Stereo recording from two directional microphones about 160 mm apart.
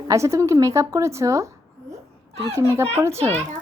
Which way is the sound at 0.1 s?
20° right (ahead or behind).